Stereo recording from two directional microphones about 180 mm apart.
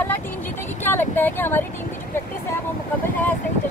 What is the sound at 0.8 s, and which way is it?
Speech, 10° left (ahead or behind).